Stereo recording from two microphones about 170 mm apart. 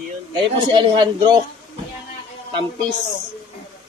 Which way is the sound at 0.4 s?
30° right (ahead or behind).